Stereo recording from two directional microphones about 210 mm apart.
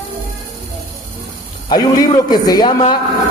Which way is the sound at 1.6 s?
20° left (ahead or behind).